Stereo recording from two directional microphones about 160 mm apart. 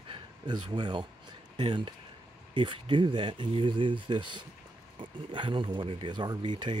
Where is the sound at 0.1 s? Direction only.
30° right (ahead or behind).